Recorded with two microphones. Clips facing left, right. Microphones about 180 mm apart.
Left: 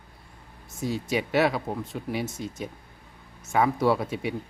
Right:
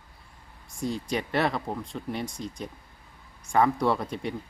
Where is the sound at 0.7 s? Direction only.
5° left (ahead or behind).